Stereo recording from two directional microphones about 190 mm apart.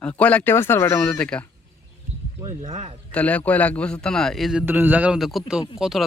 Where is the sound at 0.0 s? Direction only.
5° left (ahead or behind).